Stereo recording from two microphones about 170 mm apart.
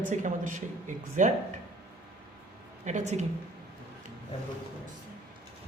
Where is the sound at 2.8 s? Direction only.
45° right (ahead or behind).